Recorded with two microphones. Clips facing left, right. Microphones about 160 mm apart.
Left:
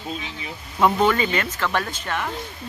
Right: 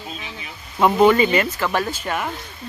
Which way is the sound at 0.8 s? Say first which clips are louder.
Right 4 dB; 10° right (ahead or behind).